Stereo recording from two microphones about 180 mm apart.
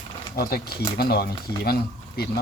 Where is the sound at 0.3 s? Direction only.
55° left (ahead or behind).